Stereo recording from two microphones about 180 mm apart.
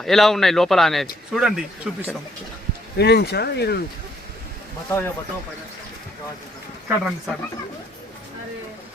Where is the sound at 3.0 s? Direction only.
65° left (ahead or behind).